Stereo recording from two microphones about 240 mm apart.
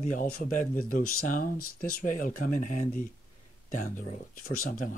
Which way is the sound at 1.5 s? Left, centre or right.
Left.